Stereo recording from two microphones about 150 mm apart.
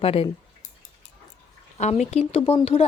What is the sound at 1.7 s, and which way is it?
Speech, 50° left (ahead or behind).